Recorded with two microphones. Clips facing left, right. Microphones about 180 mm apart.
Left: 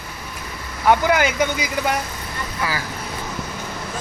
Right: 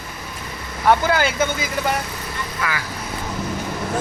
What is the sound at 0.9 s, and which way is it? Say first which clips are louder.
Speech: left 1 dB; 20° left (ahead or behind).